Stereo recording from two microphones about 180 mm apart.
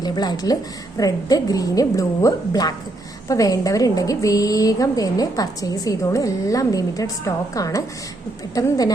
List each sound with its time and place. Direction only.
0.0 s a woman's voice: 20° left (ahead or behind)